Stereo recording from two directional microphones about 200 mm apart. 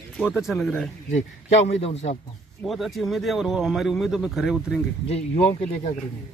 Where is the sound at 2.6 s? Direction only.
Centre (ahead or behind).